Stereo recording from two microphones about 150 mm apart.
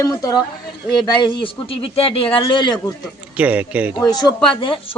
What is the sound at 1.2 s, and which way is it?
A man's voice, 35° left (ahead or behind).